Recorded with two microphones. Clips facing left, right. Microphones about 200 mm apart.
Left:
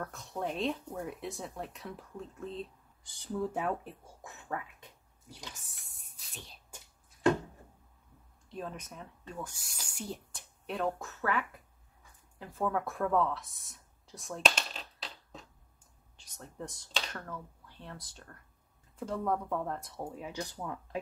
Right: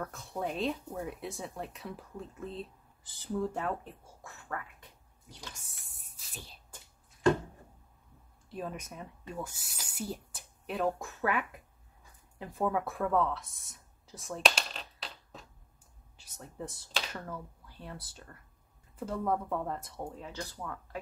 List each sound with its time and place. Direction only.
0.0 s speech: 5° right (ahead or behind)
3.5 s speech: 10° left (ahead or behind)
5.3 s speech: 5° left (ahead or behind)
8.5 s speech: 5° right (ahead or behind)
20.3 s speech: 20° left (ahead or behind)